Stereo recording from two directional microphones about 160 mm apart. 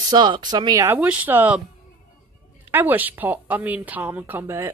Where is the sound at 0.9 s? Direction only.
10° right (ahead or behind).